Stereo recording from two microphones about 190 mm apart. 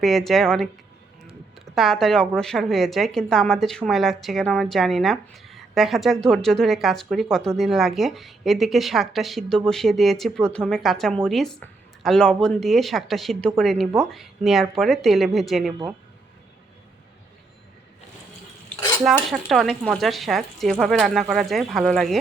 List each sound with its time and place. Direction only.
0.0 s a woman's voice: centre (ahead or behind)
1.7 s a woman's voice: centre (ahead or behind)
19.5 s a woman's voice: centre (ahead or behind)